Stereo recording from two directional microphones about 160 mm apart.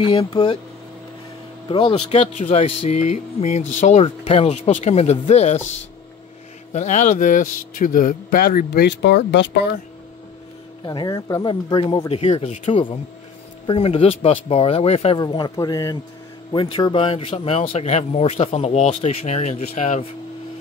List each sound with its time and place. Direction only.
0.0 s a man's voice: 35° left (ahead or behind)
1.7 s a man's voice: 30° left (ahead or behind)
2.0 s speech: 45° left (ahead or behind)
6.7 s speech: 50° left (ahead or behind); by 9.7 s 90° left
10.9 s a man's voice: 25° left (ahead or behind)
15.1 s a man's voice: 25° left (ahead or behind)